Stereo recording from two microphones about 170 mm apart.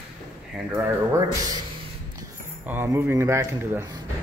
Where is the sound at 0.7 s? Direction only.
15° right (ahead or behind).